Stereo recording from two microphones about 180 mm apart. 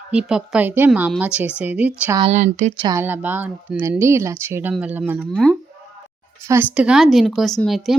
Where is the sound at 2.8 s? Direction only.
15° right (ahead or behind).